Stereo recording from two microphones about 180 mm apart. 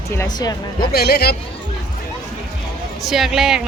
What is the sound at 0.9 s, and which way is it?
Speech, 60° left (ahead or behind).